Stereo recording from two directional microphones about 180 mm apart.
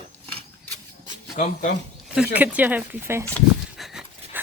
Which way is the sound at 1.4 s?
40° left (ahead or behind).